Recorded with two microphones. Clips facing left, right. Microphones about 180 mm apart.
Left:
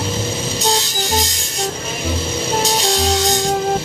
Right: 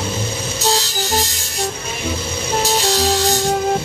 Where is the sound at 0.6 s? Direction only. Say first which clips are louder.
Right 1 dB; 20° left (ahead or behind).